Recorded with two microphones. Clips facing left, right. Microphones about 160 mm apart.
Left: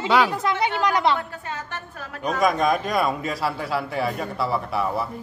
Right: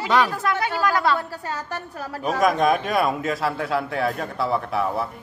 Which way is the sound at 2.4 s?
Centre (ahead or behind).